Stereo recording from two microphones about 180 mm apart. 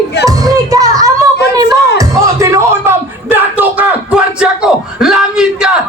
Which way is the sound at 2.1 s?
15° right (ahead or behind).